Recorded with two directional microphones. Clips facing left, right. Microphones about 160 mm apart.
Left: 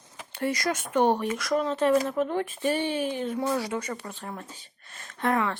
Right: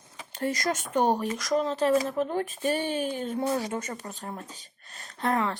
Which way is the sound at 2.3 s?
40° right (ahead or behind).